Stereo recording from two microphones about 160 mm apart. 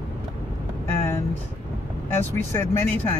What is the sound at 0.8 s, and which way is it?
Vehicle, 15° left (ahead or behind).